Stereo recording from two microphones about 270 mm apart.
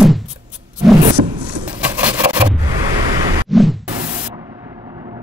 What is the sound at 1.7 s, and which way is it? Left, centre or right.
Scrape, centre.